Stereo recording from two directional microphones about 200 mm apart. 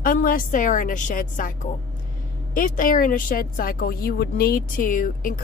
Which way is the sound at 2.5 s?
45° left (ahead or behind).